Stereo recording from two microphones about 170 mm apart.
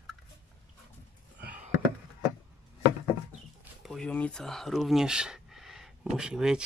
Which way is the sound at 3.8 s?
5° left (ahead or behind).